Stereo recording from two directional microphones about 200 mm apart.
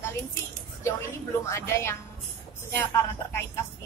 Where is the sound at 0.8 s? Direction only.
15° left (ahead or behind).